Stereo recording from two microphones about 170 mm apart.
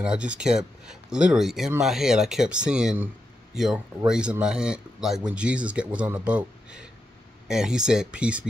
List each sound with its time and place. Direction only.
0.0 s speech: 5° right (ahead or behind)